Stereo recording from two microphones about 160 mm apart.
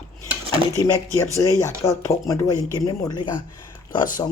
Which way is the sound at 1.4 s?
15° left (ahead or behind).